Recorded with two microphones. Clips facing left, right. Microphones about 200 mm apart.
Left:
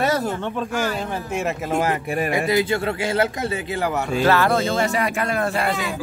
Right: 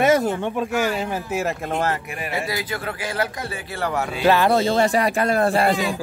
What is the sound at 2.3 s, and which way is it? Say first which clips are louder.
Speech: left 6 dB; 20° left (ahead or behind).